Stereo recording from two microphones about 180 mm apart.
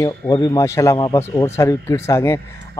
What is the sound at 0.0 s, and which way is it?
A man's voice, 20° left (ahead or behind).